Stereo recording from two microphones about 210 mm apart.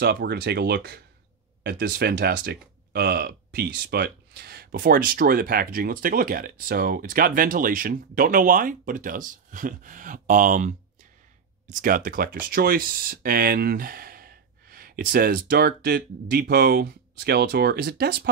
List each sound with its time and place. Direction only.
0.0 s speech: 50° right (ahead or behind)